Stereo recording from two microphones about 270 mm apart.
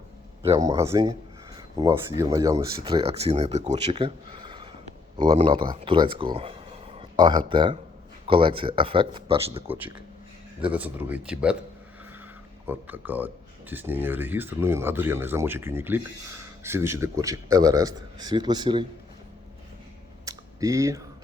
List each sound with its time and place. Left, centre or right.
0.4 s speech: centre
9.6 s speech: centre
12.6 s speech: centre
20.2 s a sound: centre